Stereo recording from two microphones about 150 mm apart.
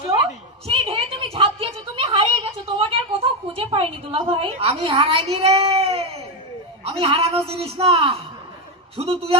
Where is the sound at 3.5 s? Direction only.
40° right (ahead or behind).